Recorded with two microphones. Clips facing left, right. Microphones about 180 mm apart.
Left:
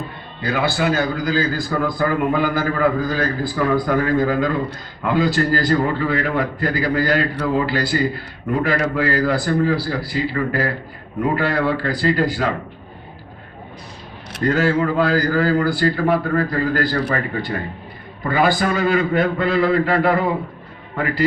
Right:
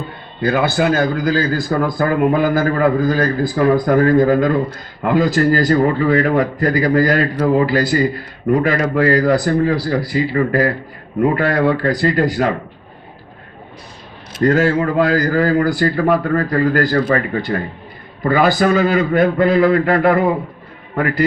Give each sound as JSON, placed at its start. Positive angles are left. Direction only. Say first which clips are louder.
{"t": 0.4, "sound": "speech", "louder": "right 4 dB", "side_deg": -50}
{"t": 14.4, "sound": "speech", "louder": "right 3 dB", "side_deg": -45}
{"t": 18.2, "sound": "speech", "louder": "right 4 dB", "side_deg": -45}